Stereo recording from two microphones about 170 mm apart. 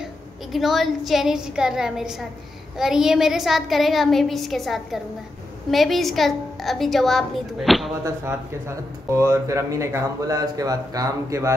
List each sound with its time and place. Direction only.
0.5 s a woman's voice: centre (ahead or behind)
8.0 s speech: 15° right (ahead or behind)